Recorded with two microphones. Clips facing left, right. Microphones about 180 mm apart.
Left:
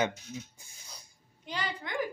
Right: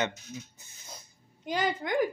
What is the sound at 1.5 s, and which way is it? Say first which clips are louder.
Speech: right 7 dB; 45° right (ahead or behind).